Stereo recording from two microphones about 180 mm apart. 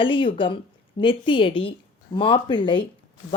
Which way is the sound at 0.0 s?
30° left (ahead or behind).